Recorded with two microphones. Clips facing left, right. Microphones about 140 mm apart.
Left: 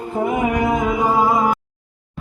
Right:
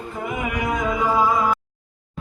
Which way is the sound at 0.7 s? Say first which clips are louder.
Left 3 dB; 25° left (ahead or behind).